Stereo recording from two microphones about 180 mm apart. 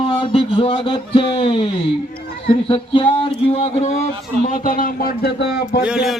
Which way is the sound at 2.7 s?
30° left (ahead or behind).